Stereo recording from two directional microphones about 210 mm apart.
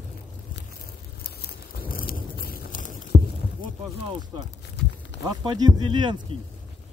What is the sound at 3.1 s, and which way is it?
Heart sounds, 25° right (ahead or behind).